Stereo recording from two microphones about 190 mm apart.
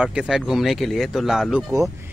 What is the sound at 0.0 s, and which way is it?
Speech, 5° right (ahead or behind).